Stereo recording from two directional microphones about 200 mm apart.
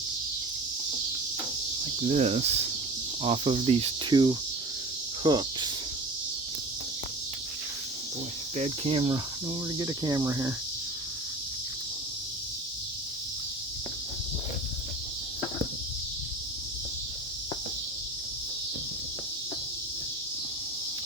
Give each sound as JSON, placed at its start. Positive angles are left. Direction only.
{"t": 2.0, "sound": "speech", "side_deg": -30}
{"t": 3.2, "sound": "cricket", "side_deg": -30}
{"t": 8.5, "sound": "cricket", "side_deg": -35}
{"t": 9.7, "sound": "speech", "side_deg": -20}